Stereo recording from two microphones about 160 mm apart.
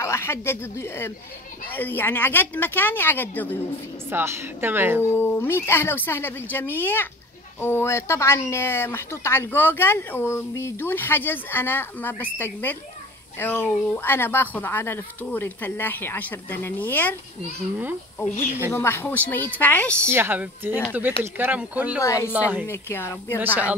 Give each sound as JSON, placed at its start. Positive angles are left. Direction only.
{"t": 0.0, "sound": "speech", "side_deg": 15}
{"t": 4.1, "sound": "a woman's voice", "side_deg": -15}
{"t": 5.1, "sound": "speech", "side_deg": 15}
{"t": 18.7, "sound": "speech", "side_deg": 15}
{"t": 20.1, "sound": "a woman's voice", "side_deg": -15}
{"t": 22.0, "sound": "a woman's voice", "side_deg": 20}
{"t": 22.3, "sound": "a woman's voice", "side_deg": -10}
{"t": 22.7, "sound": "speech", "side_deg": 15}
{"t": 23.4, "sound": "a woman's voice", "side_deg": -10}